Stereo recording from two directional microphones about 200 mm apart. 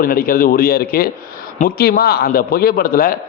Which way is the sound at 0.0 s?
45° left (ahead or behind).